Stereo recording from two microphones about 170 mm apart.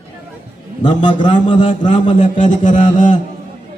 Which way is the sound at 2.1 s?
45° left (ahead or behind).